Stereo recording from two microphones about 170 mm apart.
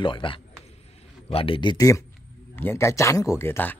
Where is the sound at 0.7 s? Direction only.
35° left (ahead or behind); by 2.0 s 20° left (ahead or behind).